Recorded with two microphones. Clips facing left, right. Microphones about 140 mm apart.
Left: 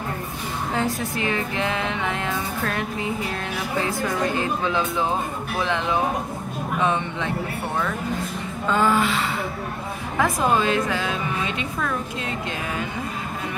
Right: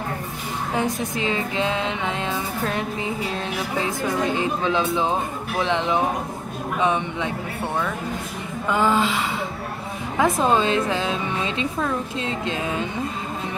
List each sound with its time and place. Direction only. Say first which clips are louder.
0.7 s a woman's voice: right 1 dB; 20° right (ahead or behind)
3.8 s a woman's voice: right 1 dB; 20° right (ahead or behind)
8.6 s a woman's voice: even; 15° right (ahead or behind)